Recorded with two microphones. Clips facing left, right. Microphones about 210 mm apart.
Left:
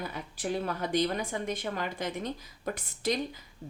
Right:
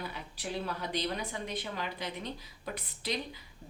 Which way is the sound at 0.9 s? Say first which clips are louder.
Left 8 dB; 50° left (ahead or behind).